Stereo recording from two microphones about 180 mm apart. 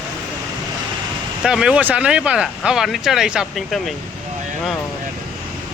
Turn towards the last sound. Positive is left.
turn(degrees=0)  # may be behind; listen again after turning